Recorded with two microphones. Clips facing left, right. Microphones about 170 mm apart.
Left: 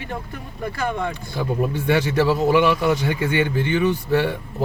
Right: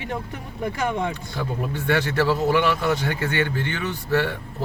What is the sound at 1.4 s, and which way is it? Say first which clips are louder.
Speech: left 6 dB; 15° left (ahead or behind).